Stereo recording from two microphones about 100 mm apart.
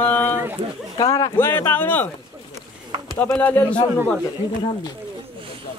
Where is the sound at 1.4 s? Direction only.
20° left (ahead or behind).